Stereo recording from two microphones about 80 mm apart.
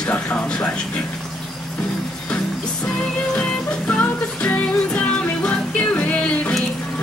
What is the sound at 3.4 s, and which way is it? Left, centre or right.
Music, centre.